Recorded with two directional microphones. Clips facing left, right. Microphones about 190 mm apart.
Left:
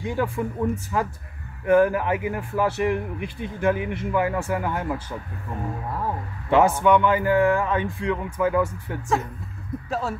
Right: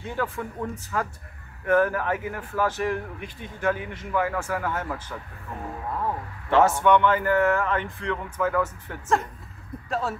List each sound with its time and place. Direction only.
0.0 s a man's voice: 15° left (ahead or behind)
6.5 s a man's voice: 10° left (ahead or behind)
9.8 s speech: centre (ahead or behind)